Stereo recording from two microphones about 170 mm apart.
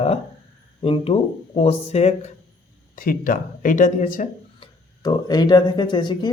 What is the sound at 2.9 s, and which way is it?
Speech, 55° left (ahead or behind).